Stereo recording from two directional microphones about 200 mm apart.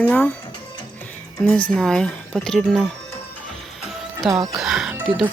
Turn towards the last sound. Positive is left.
turn(degrees=-5)  # may be behind; listen again after turning